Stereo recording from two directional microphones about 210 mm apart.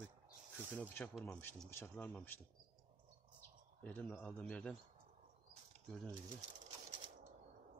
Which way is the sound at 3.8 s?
10° left (ahead or behind).